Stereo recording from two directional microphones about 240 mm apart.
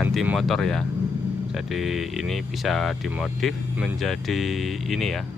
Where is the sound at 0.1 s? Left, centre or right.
Centre.